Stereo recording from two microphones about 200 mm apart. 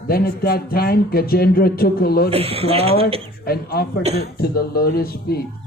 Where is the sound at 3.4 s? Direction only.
50° left (ahead or behind).